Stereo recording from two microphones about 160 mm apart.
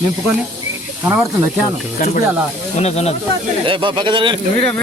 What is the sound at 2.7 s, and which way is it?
Speech, 40° left (ahead or behind).